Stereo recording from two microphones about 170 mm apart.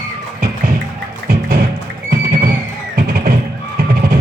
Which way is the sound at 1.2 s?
60° right (ahead or behind).